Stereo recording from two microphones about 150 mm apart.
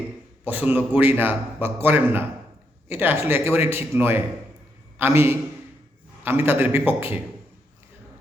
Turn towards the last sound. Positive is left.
turn(degrees=-15)  # may be behind; listen again after turning